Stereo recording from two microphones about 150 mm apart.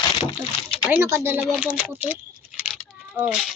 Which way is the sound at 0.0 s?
30° left (ahead or behind).